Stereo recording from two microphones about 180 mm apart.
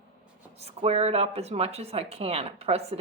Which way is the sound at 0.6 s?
35° right (ahead or behind).